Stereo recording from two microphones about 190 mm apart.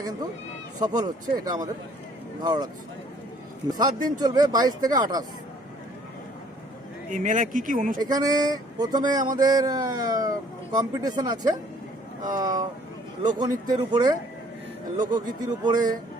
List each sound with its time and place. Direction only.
0.8 s speech: 20° right (ahead or behind)
3.7 s speech: 20° right (ahead or behind)
7.1 s speech: 40° right (ahead or behind)
8.1 s speech: 20° right (ahead or behind)